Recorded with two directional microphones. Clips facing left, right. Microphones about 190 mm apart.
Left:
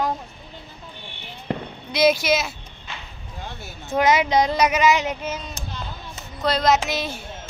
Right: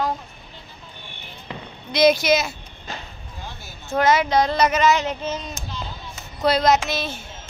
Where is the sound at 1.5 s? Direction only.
50° left (ahead or behind).